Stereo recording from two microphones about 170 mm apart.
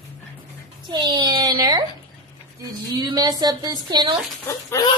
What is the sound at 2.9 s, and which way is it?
A woman's voice, 25° right (ahead or behind).